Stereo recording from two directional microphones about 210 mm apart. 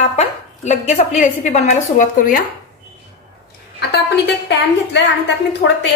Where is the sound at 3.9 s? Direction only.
55° left (ahead or behind).